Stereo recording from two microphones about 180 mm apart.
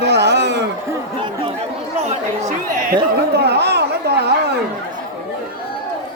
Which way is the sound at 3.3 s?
65° right (ahead or behind).